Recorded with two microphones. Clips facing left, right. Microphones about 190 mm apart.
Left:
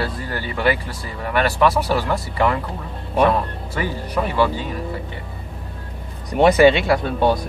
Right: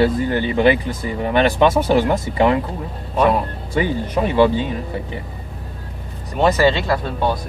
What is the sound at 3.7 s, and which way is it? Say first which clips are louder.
Speech: right 5 dB; 20° right (ahead or behind).